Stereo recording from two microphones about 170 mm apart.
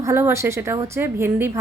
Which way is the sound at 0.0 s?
15° right (ahead or behind).